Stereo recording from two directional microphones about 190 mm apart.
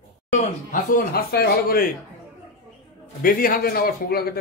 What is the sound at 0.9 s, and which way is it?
Speech, 50° left (ahead or behind).